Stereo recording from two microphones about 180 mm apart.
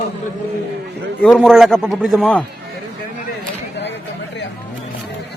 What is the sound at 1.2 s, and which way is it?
A man's voice, centre (ahead or behind).